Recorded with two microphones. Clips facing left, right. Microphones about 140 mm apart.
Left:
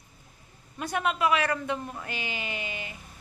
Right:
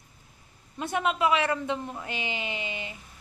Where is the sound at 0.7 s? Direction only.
20° right (ahead or behind).